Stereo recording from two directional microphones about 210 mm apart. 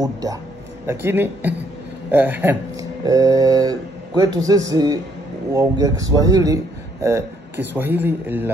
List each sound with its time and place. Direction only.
0.0 s speech: 15° right (ahead or behind)